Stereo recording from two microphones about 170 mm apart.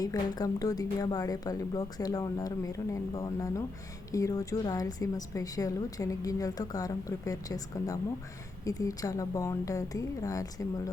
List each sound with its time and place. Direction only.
0.0 s a woman's voice: 20° left (ahead or behind)